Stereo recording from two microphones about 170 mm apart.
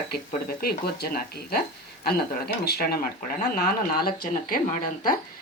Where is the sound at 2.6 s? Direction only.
65° left (ahead or behind).